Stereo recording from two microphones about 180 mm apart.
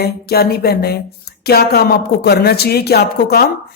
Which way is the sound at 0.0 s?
60° left (ahead or behind).